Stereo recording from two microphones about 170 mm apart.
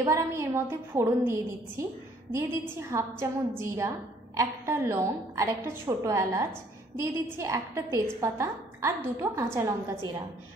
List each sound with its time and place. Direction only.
0.0 s a woman's voice: 15° right (ahead or behind)